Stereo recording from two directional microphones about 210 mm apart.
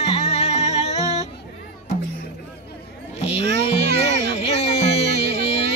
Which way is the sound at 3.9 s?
30° left (ahead or behind).